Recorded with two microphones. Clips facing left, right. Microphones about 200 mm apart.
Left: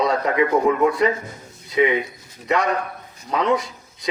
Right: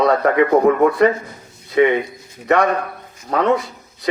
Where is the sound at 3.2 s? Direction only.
60° right (ahead or behind).